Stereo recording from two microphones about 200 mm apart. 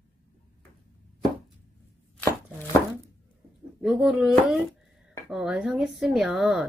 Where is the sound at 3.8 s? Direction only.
5° right (ahead or behind).